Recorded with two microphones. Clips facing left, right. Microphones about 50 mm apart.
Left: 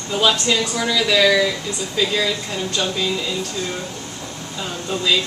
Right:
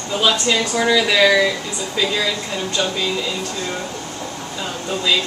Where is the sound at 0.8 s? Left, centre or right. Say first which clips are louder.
Right 4 dB; centre.